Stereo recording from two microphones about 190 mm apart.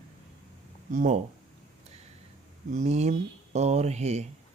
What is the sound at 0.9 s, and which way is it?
Speech, 45° right (ahead or behind).